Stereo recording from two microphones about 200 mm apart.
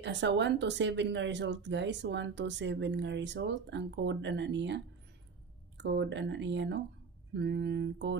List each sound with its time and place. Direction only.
0.0 s speech: 60° right (ahead or behind)